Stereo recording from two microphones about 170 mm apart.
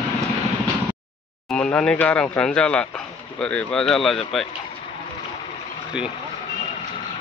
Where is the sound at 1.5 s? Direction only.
5° left (ahead or behind).